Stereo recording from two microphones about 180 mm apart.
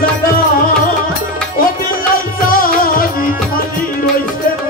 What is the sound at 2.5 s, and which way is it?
Music, 50° left (ahead or behind).